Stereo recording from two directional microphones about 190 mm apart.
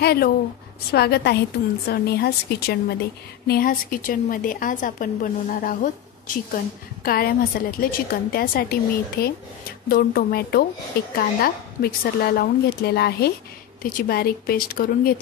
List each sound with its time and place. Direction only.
0.0 s a woman's voice: 55° left (ahead or behind)